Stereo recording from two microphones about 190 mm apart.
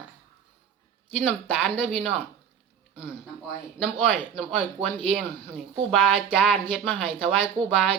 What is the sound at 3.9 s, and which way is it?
Speech, 5° right (ahead or behind).